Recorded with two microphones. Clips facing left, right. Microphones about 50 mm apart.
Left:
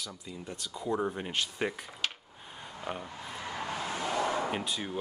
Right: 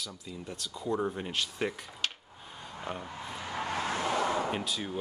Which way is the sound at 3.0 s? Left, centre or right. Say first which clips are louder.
Right 1 dB; centre.